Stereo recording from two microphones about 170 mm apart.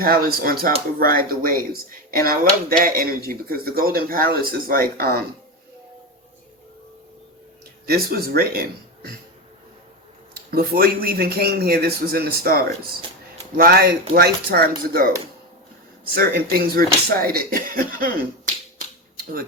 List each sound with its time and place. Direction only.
0.0 s speech: 60° right (ahead or behind)
7.9 s speech: 65° right (ahead or behind)
10.3 s speech: 65° right (ahead or behind)
19.1 s a sound: 60° right (ahead or behind)